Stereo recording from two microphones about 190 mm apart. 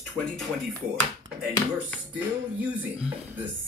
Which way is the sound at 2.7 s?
5° right (ahead or behind).